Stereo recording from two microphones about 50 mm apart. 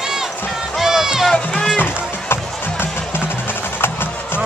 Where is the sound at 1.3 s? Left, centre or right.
Centre.